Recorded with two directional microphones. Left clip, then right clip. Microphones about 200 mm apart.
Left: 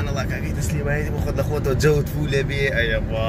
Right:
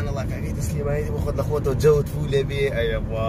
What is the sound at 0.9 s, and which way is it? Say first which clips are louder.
Speech: even; 5° right (ahead or behind).